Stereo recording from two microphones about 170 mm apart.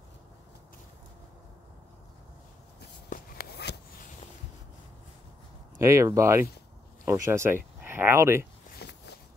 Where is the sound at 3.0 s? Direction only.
55° left (ahead or behind); by 3.8 s 70° left (ahead or behind).